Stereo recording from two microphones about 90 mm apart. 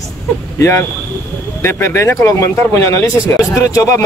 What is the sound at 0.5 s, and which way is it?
Speech, 35° left (ahead or behind).